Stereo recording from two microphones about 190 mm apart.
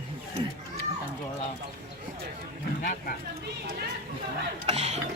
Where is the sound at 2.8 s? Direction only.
45° left (ahead or behind).